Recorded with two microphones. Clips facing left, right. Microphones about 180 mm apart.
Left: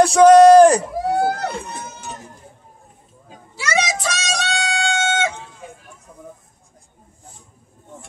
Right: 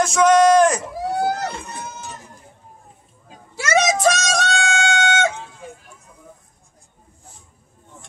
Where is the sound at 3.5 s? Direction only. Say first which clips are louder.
Right 4 dB; 50° right (ahead or behind).